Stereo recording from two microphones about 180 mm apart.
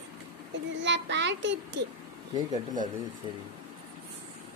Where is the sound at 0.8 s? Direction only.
80° right.